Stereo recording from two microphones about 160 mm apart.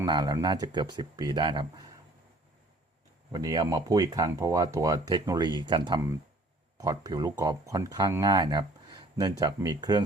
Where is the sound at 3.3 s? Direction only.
25° right (ahead or behind).